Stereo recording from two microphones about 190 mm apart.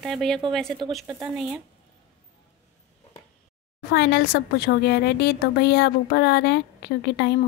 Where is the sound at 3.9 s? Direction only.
55° left (ahead or behind).